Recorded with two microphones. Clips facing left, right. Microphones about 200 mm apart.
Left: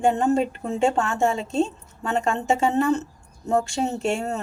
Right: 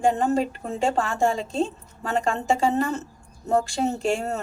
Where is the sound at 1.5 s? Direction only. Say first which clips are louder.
Left 2 dB; centre (ahead or behind).